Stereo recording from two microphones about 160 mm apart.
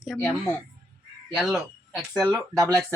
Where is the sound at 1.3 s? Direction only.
Centre (ahead or behind).